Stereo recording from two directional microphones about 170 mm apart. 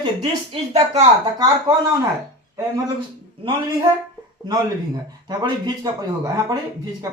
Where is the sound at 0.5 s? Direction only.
35° right (ahead or behind).